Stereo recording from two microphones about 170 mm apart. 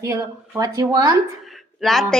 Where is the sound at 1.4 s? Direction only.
Centre (ahead or behind).